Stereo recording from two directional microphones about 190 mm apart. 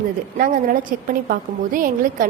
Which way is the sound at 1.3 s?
45° right (ahead or behind).